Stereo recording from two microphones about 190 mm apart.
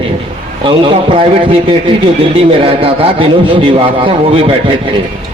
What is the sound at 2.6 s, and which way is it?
A man's voice, 30° right (ahead or behind).